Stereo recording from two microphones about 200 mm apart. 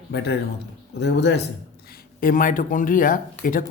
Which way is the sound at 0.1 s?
55° left (ahead or behind).